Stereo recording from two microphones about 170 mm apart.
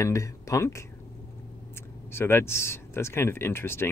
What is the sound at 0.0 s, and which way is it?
Speech, 20° left (ahead or behind).